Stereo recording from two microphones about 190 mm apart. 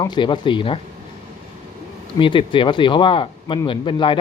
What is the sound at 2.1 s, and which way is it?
Speech, 25° left (ahead or behind).